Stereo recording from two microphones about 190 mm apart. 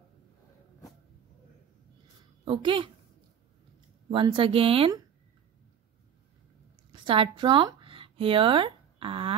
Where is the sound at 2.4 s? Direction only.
25° right (ahead or behind).